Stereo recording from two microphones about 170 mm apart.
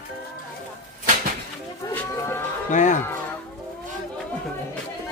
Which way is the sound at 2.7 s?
45° left (ahead or behind).